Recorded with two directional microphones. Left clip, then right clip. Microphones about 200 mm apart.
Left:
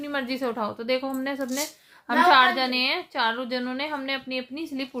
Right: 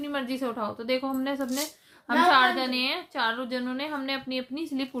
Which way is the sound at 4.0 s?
20° left (ahead or behind).